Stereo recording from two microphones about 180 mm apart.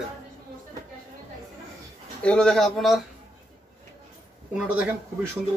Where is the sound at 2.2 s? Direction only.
5° left (ahead or behind).